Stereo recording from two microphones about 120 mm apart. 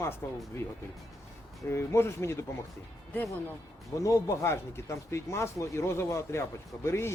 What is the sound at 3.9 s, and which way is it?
Speech, 25° left (ahead or behind).